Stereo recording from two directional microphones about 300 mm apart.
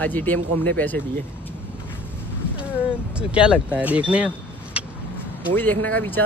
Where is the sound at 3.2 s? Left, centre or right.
Centre.